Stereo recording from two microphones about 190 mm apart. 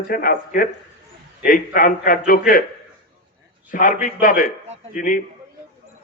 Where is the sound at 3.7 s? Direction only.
45° left (ahead or behind).